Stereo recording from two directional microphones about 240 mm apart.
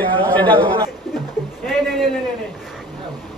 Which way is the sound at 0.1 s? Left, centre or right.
Centre.